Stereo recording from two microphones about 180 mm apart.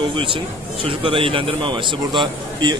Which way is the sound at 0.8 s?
30° right (ahead or behind).